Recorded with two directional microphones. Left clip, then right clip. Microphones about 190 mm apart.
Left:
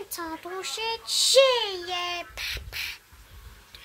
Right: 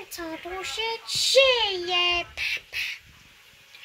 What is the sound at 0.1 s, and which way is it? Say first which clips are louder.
A child's voice: right 2 dB; 5° left (ahead or behind).